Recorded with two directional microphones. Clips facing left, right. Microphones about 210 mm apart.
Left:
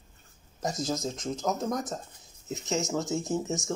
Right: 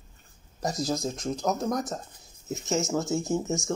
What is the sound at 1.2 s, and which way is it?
Speech, 15° right (ahead or behind).